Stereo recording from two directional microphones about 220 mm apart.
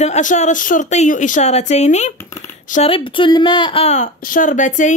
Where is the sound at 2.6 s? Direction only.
30° left (ahead or behind).